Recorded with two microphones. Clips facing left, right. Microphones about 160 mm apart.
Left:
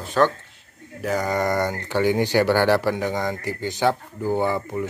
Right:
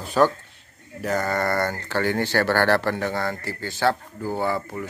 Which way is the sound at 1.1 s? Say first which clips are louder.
Left 1 dB; 15° left (ahead or behind).